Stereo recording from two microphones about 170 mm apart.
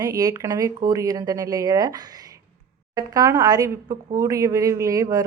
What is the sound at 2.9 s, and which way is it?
A woman's voice, 20° right (ahead or behind).